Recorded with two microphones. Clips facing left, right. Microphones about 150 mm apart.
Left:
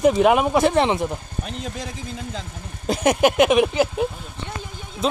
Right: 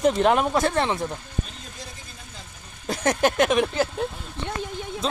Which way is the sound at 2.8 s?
15° left (ahead or behind).